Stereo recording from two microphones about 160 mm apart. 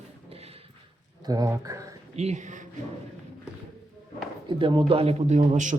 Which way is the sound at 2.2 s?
45° right (ahead or behind).